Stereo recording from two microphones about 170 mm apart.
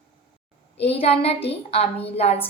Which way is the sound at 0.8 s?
35° left (ahead or behind).